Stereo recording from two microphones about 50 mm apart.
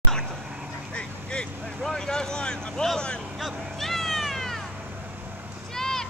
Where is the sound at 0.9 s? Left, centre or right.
Left.